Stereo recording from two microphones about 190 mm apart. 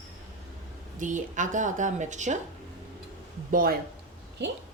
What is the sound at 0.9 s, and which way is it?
A woman's voice, 40° right (ahead or behind).